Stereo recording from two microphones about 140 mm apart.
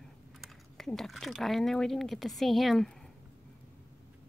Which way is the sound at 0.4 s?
5° left (ahead or behind).